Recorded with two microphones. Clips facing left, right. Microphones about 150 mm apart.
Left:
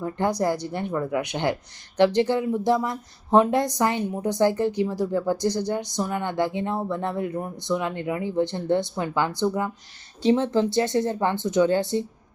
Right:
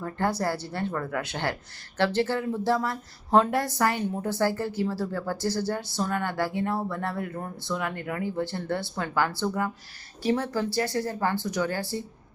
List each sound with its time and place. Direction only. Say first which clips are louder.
0.0 s speech: left 4 dB; 15° left (ahead or behind)